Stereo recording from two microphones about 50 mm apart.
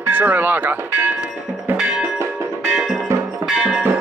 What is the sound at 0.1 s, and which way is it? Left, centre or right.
Speech, right.